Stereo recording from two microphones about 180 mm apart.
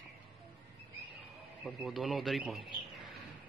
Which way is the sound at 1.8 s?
Centre (ahead or behind).